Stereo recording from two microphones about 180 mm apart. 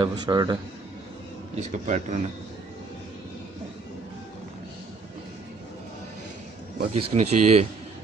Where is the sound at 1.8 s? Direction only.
40° right (ahead or behind).